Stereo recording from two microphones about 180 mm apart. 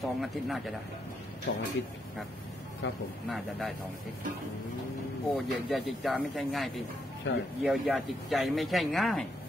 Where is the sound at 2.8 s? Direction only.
90° left.